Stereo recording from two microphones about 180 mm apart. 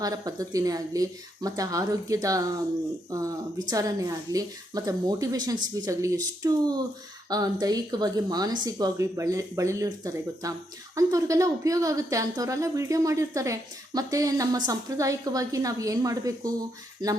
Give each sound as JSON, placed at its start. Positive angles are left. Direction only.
{"t": 0.0, "sound": "a woman's voice", "side_deg": -20}